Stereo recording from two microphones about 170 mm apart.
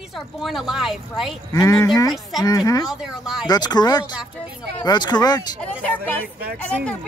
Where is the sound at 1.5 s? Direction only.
20° left (ahead or behind).